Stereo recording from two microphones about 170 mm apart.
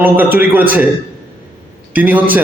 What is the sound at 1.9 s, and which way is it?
Speech, 10° right (ahead or behind).